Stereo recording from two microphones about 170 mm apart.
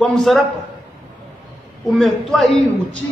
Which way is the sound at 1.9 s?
Centre (ahead or behind).